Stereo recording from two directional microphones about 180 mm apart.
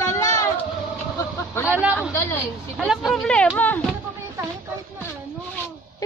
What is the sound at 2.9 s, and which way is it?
Speech, centre (ahead or behind).